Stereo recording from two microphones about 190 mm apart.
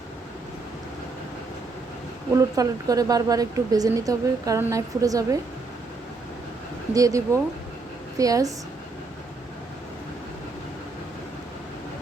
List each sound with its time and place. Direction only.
2.3 s speech: 20° right (ahead or behind)
6.9 s speech: 20° right (ahead or behind)
8.2 s speech: 20° right (ahead or behind)